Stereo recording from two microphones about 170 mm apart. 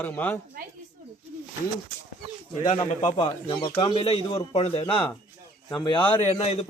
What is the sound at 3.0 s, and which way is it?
A man's voice, 25° left (ahead or behind).